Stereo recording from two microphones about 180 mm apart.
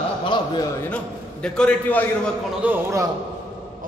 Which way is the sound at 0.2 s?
25° left (ahead or behind).